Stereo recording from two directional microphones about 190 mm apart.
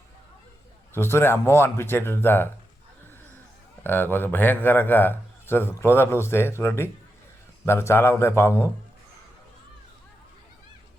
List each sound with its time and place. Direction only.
0.9 s a man's voice: 10° left (ahead or behind)
3.8 s a man's voice: 10° left (ahead or behind)